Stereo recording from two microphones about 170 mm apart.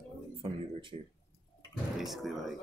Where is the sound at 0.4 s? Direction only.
30° right (ahead or behind).